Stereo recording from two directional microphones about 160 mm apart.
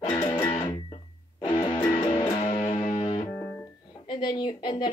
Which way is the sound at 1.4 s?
30° left (ahead or behind).